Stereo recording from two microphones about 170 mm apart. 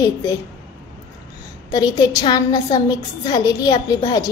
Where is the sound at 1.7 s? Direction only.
25° left (ahead or behind).